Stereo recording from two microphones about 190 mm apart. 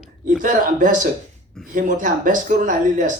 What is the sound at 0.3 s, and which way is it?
A man's voice, 45° right (ahead or behind).